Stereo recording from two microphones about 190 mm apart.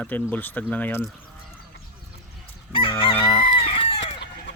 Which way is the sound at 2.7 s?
30° left (ahead or behind).